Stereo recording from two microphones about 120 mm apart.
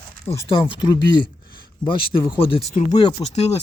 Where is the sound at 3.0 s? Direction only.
40° left (ahead or behind).